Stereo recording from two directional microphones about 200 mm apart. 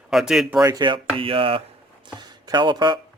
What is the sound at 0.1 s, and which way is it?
Speech, centre (ahead or behind).